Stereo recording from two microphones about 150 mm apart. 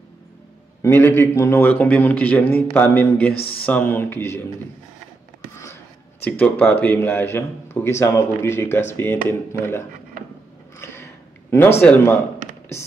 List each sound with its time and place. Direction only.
0.8 s a man's voice: 15° left (ahead or behind)
3.3 s speech: 40° left (ahead or behind)
3.6 s a man's voice: 10° left (ahead or behind)
6.2 s a man's voice: 10° left (ahead or behind)
10.8 s a sound: 15° left (ahead or behind)
11.8 s a man's voice: 15° left (ahead or behind)